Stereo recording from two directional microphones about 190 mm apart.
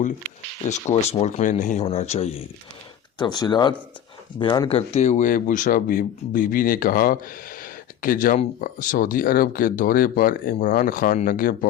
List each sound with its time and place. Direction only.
0.6 s speech: 35° left (ahead or behind)
3.2 s speech: 20° left (ahead or behind)
4.8 s speech: 35° left (ahead or behind)